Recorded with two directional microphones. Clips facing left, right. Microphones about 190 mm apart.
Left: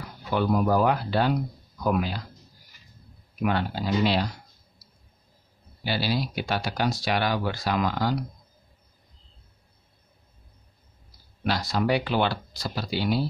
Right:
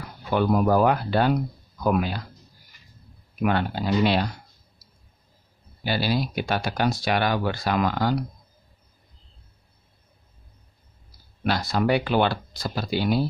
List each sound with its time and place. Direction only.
0.3 s speech: 50° right (ahead or behind)
3.4 s speech: 55° right (ahead or behind)
5.9 s speech: 50° right (ahead or behind)
11.4 s speech: 55° right (ahead or behind)